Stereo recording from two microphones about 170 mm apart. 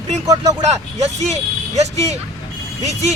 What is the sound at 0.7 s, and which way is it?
Speech, 40° right (ahead or behind).